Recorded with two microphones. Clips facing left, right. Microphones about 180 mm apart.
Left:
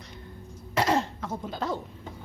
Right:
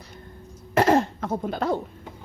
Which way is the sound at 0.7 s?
55° right (ahead or behind).